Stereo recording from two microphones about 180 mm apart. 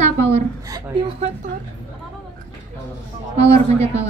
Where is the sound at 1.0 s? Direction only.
40° right (ahead or behind).